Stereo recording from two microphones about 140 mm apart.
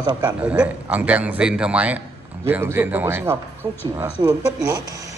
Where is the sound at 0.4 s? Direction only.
10° right (ahead or behind).